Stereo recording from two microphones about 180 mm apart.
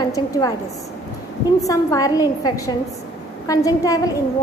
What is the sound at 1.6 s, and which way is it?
A woman's voice, 20° left (ahead or behind).